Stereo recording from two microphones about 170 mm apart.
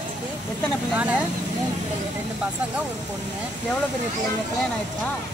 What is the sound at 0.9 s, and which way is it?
Speech, 10° right (ahead or behind).